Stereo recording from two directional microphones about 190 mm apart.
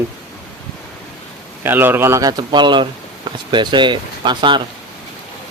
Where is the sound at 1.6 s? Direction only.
10° right (ahead or behind).